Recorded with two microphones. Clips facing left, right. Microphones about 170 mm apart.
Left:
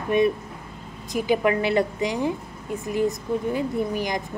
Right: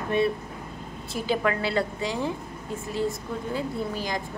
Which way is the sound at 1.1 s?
15° left (ahead or behind).